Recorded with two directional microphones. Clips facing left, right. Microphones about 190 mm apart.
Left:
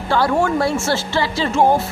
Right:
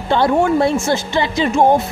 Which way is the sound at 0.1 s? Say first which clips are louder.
Right 3 dB; 20° right (ahead or behind).